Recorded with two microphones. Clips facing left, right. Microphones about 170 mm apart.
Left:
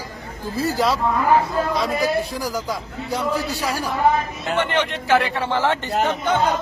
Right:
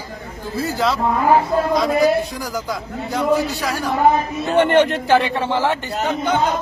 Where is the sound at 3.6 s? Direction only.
10° left (ahead or behind).